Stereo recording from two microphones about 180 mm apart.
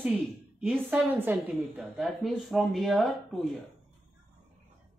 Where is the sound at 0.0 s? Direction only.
10° right (ahead or behind).